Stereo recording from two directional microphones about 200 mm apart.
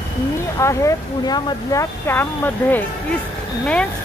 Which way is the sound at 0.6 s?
15° left (ahead or behind).